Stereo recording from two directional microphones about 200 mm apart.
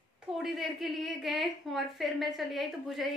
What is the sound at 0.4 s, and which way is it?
A woman's voice, centre (ahead or behind).